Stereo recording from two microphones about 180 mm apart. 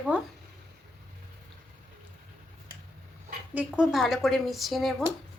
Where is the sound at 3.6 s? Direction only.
Centre (ahead or behind).